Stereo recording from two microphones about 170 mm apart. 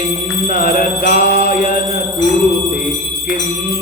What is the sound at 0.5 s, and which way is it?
Mantra, 55° left (ahead or behind).